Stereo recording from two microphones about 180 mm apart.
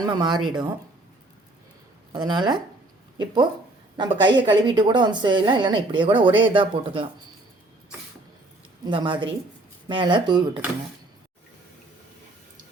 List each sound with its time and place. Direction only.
0.0 s a woman's voice: 25° right (ahead or behind)
2.1 s a woman's voice: 25° right (ahead or behind)
3.9 s a woman's voice: 25° right (ahead or behind)
8.8 s a woman's voice: 25° right (ahead or behind)